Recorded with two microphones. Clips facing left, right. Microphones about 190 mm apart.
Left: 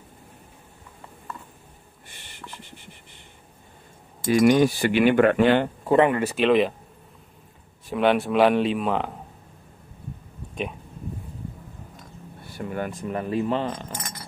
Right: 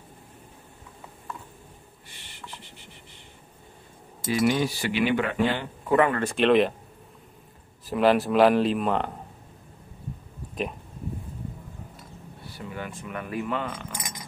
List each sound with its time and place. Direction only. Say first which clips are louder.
4.5 s speech: left 7 dB; 50° left (ahead or behind)
5.9 s speech: left 2 dB; 25° left (ahead or behind)
6.1 s speech: left 1 dB; 5° left (ahead or behind)
7.8 s speech: even; centre (ahead or behind)
10.5 s a sound: even; centre (ahead or behind)
12.4 s speech: left 7 dB; 50° left (ahead or behind); by 13.9 s 30° left (ahead or behind)
13.9 s a sound: left 1 dB; 15° right (ahead or behind)